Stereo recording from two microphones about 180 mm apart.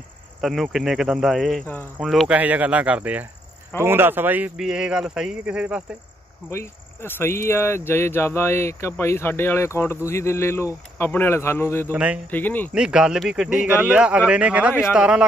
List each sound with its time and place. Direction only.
0.4 s speech: centre (ahead or behind)
2.0 s speech: 5° right (ahead or behind)
6.5 s speech: 15° left (ahead or behind)
11.9 s speech: 5° right (ahead or behind)
12.3 s speech: 10° left (ahead or behind)
12.7 s speech: 5° right (ahead or behind)